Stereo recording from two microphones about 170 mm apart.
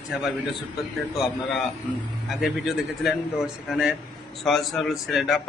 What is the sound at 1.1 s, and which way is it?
A man's voice, centre (ahead or behind).